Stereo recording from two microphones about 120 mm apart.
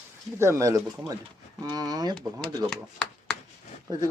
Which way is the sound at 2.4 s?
5° left (ahead or behind).